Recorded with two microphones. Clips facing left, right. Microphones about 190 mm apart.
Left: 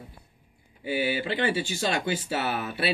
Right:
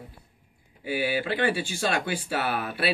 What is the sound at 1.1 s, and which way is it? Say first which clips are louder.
Speech: right 3 dB; 25° left (ahead or behind).